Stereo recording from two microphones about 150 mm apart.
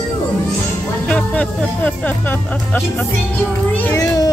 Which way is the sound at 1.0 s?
10° left (ahead or behind).